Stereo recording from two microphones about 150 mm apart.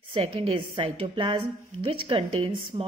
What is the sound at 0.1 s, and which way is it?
A woman's voice, 40° right (ahead or behind).